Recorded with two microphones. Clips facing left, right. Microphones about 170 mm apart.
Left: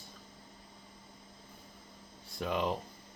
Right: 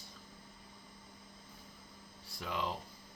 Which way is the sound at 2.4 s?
55° left (ahead or behind).